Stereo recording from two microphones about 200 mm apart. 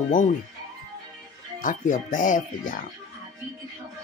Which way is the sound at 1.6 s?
40° left (ahead or behind).